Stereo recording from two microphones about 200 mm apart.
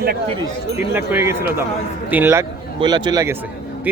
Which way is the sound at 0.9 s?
10° right (ahead or behind).